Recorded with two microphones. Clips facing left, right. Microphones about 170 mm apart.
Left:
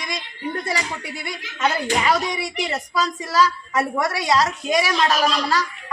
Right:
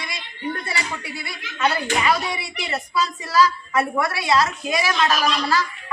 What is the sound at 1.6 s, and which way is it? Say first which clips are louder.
A woman's voice: even; 40° left (ahead or behind).